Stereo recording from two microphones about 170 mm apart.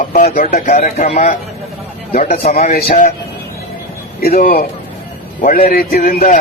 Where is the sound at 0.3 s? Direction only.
50° left (ahead or behind).